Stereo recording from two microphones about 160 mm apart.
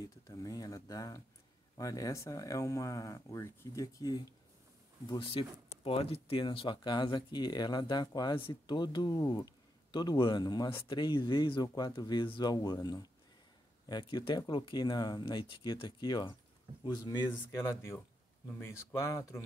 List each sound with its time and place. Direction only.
0.0 s speech: 20° left (ahead or behind)
5.3 s speech: 35° left (ahead or behind)
18.5 s speech: 15° left (ahead or behind)